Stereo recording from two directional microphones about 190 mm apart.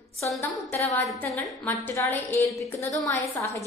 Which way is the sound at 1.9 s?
15° left (ahead or behind).